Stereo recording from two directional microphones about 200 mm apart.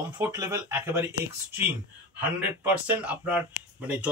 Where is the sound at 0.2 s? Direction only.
15° right (ahead or behind).